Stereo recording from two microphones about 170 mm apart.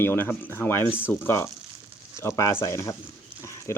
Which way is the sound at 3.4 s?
15° left (ahead or behind).